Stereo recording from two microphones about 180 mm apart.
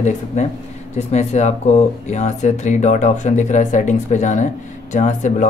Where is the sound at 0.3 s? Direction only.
40° left (ahead or behind).